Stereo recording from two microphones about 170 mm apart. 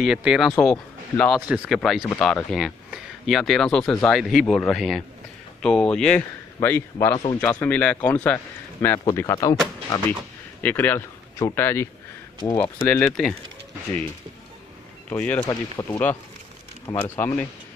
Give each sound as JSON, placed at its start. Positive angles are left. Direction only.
{"t": 0.0, "sound": "speech", "side_deg": -5}
{"t": 0.5, "sound": "speech", "side_deg": 5}
{"t": 10.6, "sound": "speech", "side_deg": 10}
{"t": 12.8, "sound": "speech", "side_deg": 10}
{"t": 15.0, "sound": "speech", "side_deg": 10}